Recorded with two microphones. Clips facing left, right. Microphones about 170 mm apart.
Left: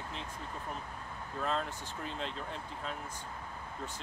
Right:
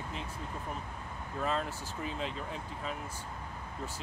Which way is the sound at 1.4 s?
5° right (ahead or behind).